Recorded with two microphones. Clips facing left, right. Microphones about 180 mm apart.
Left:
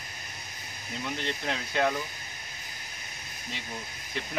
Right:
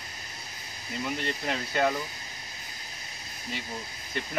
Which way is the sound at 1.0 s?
5° right (ahead or behind).